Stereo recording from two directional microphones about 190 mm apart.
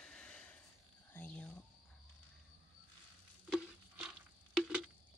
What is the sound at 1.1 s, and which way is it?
Whispering, 5° left (ahead or behind).